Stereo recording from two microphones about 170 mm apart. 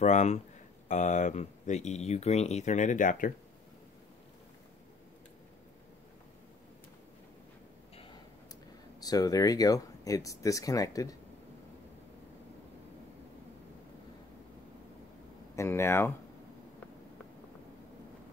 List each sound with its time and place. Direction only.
0.0 s speech: 45° left (ahead or behind)
9.0 s speech: 20° left (ahead or behind)
15.5 s speech: 15° left (ahead or behind)